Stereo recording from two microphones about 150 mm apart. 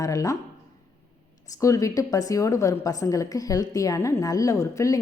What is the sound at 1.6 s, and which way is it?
A woman's voice, 20° left (ahead or behind).